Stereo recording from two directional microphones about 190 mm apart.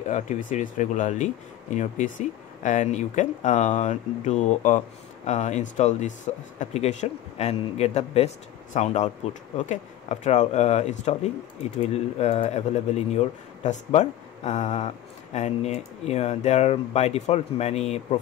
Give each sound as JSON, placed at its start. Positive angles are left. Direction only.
{"t": 0.1, "sound": "speech", "side_deg": 40}